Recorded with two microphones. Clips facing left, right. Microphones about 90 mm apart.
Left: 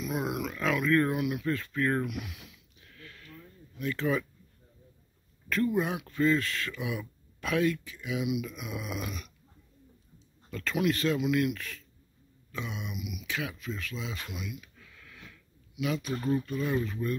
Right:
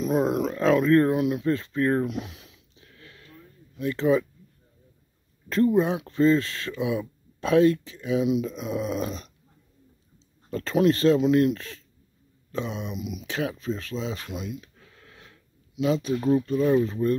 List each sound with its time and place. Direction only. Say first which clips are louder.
0.0 s a sound: right 9 dB; 35° right (ahead or behind)
5.5 s speech: right 7 dB; 30° right (ahead or behind)
10.5 s speech: right 8 dB; 35° right (ahead or behind)